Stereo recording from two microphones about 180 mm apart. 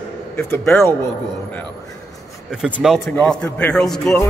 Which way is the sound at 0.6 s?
Centre (ahead or behind).